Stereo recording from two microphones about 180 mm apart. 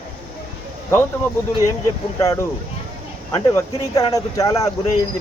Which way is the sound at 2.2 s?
20° left (ahead or behind).